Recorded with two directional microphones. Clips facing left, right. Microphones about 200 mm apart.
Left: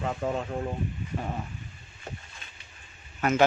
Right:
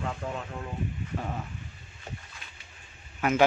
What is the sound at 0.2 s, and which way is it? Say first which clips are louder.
Speech: left 6 dB; 35° left (ahead or behind).